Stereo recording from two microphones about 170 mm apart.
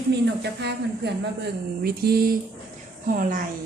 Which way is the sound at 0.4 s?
80° right.